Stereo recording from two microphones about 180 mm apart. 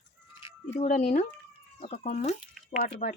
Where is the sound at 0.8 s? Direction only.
45° left (ahead or behind).